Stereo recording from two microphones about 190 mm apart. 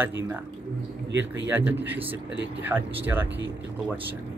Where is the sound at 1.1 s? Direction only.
70° right (ahead or behind).